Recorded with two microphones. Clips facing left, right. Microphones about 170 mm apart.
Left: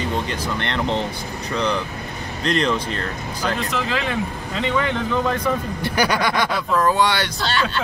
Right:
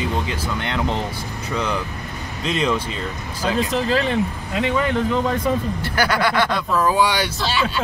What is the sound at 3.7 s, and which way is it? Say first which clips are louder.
Speech: right 3 dB; 35° right (ahead or behind).